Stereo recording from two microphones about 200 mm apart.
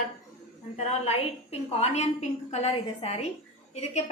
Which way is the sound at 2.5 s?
35° left (ahead or behind).